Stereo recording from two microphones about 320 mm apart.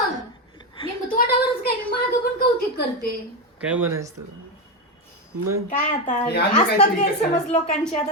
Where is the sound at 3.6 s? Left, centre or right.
Centre.